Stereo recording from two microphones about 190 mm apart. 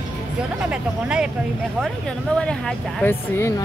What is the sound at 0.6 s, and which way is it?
Speech, 5° right (ahead or behind).